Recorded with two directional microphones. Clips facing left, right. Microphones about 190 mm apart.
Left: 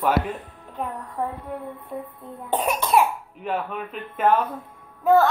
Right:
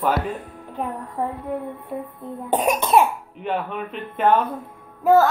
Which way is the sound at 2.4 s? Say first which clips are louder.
Right 3 dB; 15° right (ahead or behind).